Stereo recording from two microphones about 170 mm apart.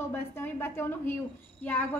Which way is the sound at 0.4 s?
15° left (ahead or behind).